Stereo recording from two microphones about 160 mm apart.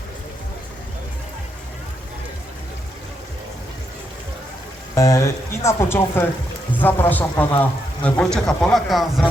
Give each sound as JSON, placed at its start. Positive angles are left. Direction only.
{"t": 4.9, "sound": "a man's voice", "side_deg": 20}